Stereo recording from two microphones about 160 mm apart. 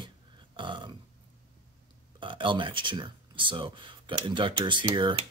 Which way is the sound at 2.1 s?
30° right (ahead or behind).